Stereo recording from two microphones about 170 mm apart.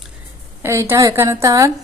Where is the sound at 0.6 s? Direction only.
15° right (ahead or behind).